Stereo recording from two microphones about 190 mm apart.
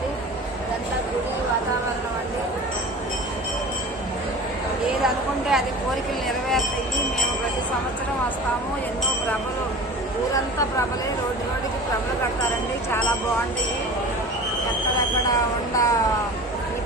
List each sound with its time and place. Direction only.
5.0 s speech: centre (ahead or behind)
15.7 s speech: 15° left (ahead or behind)